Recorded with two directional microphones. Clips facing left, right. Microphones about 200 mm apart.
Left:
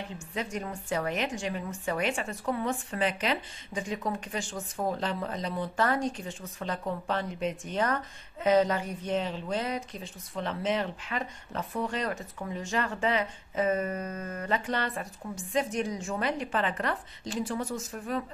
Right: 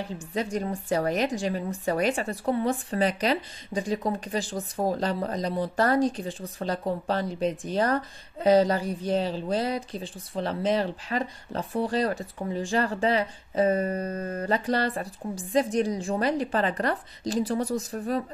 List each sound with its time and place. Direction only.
0.3 s a woman's voice: 35° right (ahead or behind)